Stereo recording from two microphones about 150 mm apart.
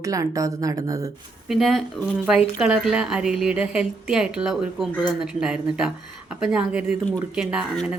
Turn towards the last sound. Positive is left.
turn(degrees=-5)  # may be behind; listen again after turning